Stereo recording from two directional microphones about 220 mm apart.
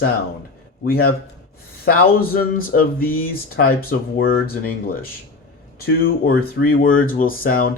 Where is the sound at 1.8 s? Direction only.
45° left (ahead or behind).